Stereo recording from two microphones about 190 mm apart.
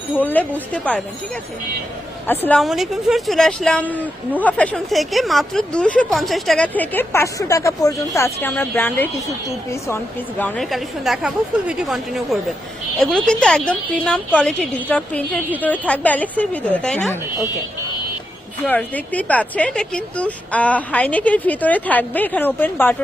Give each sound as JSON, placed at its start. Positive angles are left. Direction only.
{"t": 0.2, "sound": "speech", "side_deg": 10}
{"t": 2.2, "sound": "speech", "side_deg": 10}
{"t": 18.6, "sound": "speech", "side_deg": 10}